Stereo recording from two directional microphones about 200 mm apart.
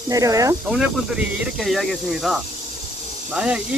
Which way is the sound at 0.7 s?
5° right (ahead or behind).